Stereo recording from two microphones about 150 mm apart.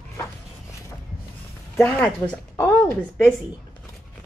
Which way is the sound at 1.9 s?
10° left (ahead or behind).